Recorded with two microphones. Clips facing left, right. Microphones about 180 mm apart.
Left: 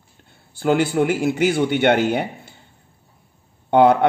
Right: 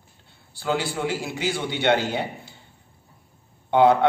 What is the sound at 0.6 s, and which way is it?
Speech, 50° left (ahead or behind).